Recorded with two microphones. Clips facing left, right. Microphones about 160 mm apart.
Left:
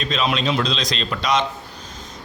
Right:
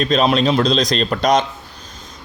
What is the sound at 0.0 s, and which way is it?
A man's voice, 45° right (ahead or behind).